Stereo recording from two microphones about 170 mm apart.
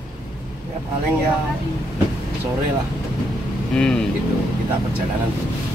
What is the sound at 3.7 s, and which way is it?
Speech, 5° left (ahead or behind).